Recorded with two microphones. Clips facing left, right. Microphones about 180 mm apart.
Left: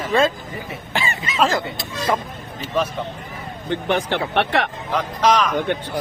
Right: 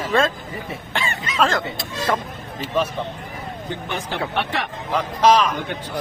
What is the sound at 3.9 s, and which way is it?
Speech, 65° left (ahead or behind).